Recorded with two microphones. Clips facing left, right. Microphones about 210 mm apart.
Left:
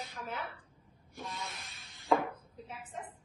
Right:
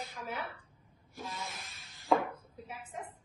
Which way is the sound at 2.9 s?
10° right (ahead or behind).